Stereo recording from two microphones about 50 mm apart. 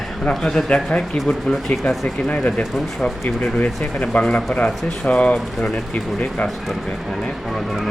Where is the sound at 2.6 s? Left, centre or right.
Centre.